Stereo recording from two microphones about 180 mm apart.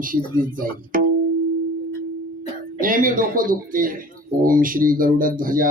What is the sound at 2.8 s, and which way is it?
A man's voice, 50° right (ahead or behind).